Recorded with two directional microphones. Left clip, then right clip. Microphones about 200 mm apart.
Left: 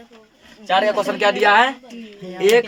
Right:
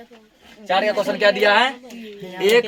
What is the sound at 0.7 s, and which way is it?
Speech, 25° left (ahead or behind).